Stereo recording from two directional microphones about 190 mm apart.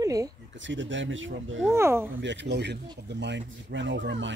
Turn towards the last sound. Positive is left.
turn(degrees=-70)  # may be behind; listen again after turning